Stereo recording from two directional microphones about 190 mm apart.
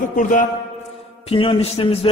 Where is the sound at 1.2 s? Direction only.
30° left (ahead or behind).